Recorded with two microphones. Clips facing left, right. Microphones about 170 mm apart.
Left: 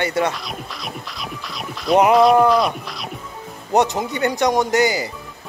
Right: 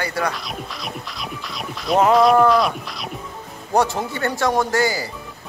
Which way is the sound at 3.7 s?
20° left (ahead or behind).